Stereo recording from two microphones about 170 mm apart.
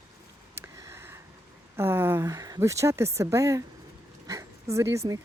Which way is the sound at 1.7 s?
15° right (ahead or behind).